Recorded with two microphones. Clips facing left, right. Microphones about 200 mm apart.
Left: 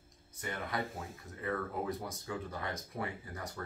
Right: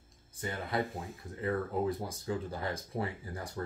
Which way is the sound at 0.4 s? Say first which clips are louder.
Right 4 dB; 30° right (ahead or behind).